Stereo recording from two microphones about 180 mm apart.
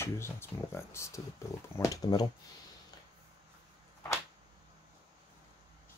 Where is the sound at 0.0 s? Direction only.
15° left (ahead or behind).